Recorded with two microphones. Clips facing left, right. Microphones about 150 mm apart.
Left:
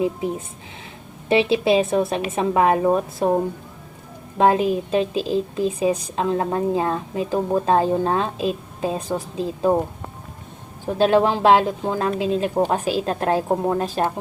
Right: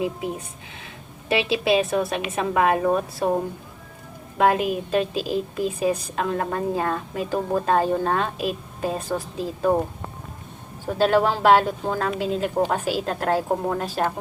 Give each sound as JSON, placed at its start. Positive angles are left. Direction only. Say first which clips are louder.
{"t": 0.0, "sound": "a woman's voice", "louder": "left 4 dB", "side_deg": 25}
{"t": 4.4, "sound": "a woman's voice", "louder": "left 3 dB", "side_deg": 30}
{"t": 10.8, "sound": "a woman's voice", "louder": "left 2 dB", "side_deg": 20}